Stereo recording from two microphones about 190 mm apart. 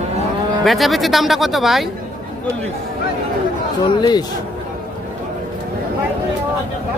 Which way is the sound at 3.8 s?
20° left (ahead or behind).